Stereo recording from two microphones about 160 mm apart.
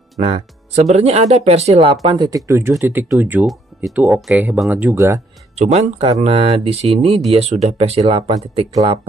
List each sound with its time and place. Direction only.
0.2 s speech: 40° right (ahead or behind)
2.0 s speech: 25° right (ahead or behind)
5.7 s speech: 40° right (ahead or behind)